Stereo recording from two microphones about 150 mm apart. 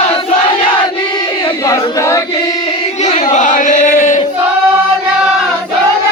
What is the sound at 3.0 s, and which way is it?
Singing, 50° left (ahead or behind).